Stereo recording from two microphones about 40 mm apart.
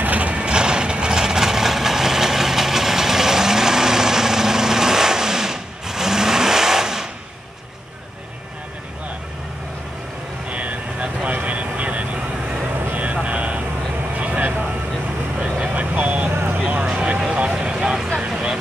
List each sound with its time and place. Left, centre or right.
0.0 s vehicle: right; by 7.1 s centre
10.5 s vehicle: right
12.7 s vehicle: right
13.0 s vehicle: right; by 18.0 s centre